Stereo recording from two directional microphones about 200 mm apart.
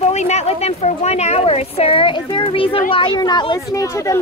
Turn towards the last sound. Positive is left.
turn(degrees=15)  # may be behind; listen again after turning